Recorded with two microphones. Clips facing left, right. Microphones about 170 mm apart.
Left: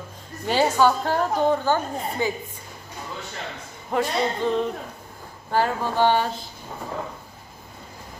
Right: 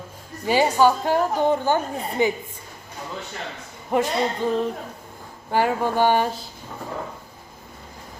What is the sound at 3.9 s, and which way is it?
A woman's voice, 15° right (ahead or behind).